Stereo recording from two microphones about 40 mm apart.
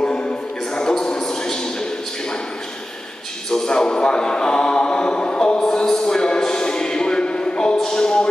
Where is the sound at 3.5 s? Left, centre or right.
Centre.